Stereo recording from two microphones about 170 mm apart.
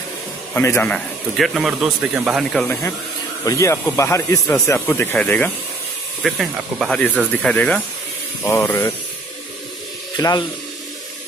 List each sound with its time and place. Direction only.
0.6 s speech: 15° left (ahead or behind)
6.2 s speech: centre (ahead or behind)
10.1 s speech: 25° left (ahead or behind)